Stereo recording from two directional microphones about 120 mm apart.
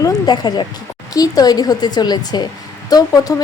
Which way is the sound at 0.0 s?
35° left (ahead or behind).